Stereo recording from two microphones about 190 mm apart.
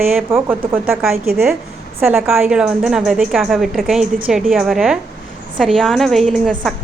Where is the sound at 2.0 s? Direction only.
10° right (ahead or behind).